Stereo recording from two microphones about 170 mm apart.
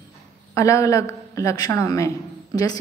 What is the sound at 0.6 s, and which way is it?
A woman's voice, 20° left (ahead or behind).